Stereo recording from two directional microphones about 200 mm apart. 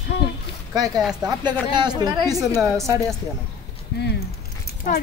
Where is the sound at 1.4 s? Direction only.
20° right (ahead or behind).